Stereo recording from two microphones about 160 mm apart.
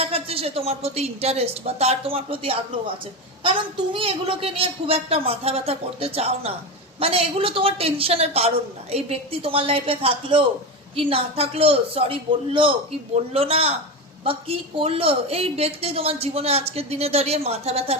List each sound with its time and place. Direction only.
0.0 s a woman's voice: 35° right (ahead or behind)